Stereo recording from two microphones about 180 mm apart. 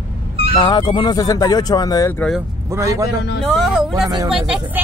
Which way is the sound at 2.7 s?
15° right (ahead or behind).